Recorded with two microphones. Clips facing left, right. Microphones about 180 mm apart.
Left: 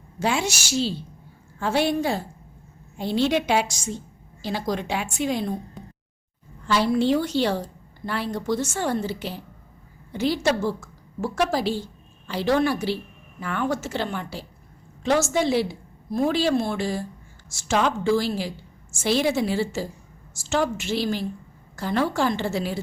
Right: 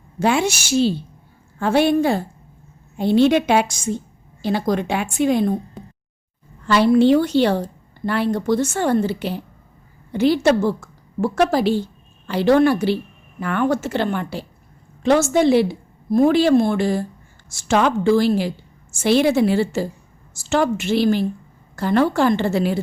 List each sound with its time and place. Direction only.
0.2 s a woman's voice: 55° right (ahead or behind)
6.7 s a woman's voice: 65° right (ahead or behind)